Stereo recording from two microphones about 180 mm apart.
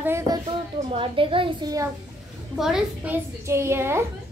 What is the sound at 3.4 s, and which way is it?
Speech, 15° right (ahead or behind).